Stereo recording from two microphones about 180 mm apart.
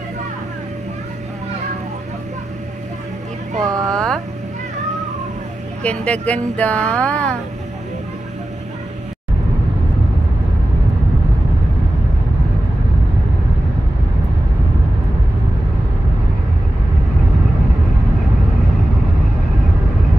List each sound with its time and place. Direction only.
3.6 s speech: 20° right (ahead or behind)
3.9 s speech: 5° left (ahead or behind)
5.8 s speech: 5° left (ahead or behind)